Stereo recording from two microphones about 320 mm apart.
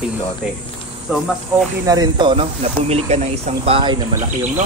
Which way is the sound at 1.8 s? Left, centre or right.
Centre.